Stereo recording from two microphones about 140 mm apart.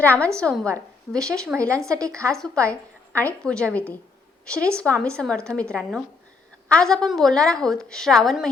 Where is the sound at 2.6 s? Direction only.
10° left (ahead or behind).